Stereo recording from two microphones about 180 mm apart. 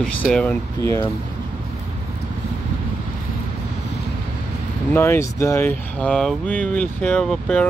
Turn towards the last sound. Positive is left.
turn(degrees=5)  # may be behind; listen again after turning